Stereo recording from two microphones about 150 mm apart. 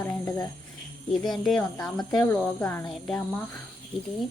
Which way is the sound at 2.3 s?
15° left (ahead or behind).